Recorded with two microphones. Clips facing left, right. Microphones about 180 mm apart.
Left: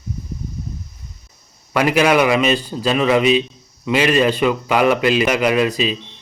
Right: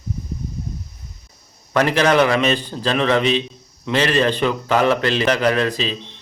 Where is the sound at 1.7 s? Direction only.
10° left (ahead or behind).